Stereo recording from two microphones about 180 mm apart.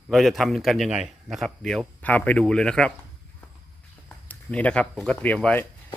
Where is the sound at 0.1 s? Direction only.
Centre (ahead or behind).